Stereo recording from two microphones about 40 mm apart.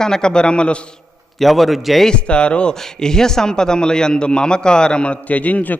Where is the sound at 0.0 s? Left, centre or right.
Centre.